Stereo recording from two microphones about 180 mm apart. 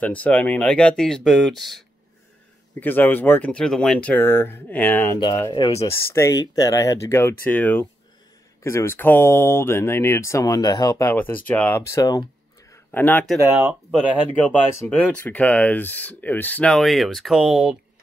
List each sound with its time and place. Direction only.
0.0 s speech: 10° left (ahead or behind)
2.8 s speech: 10° left (ahead or behind)
5.7 s speech: 35° left (ahead or behind)
6.1 s speech: 15° left (ahead or behind)
13.4 s speech: 10° right (ahead or behind)
14.4 s speech: 10° left (ahead or behind)